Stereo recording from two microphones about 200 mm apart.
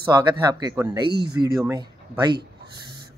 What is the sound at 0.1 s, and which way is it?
Speech, 20° right (ahead or behind).